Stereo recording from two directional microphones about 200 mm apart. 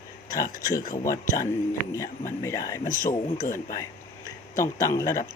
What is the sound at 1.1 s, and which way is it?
Speech, 15° left (ahead or behind).